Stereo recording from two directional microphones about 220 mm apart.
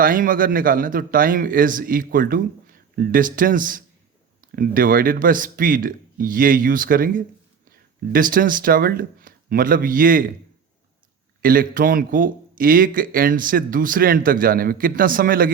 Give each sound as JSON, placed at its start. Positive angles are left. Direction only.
{"t": 0.0, "sound": "a man's voice", "side_deg": -40}
{"t": 11.4, "sound": "a man's voice", "side_deg": -40}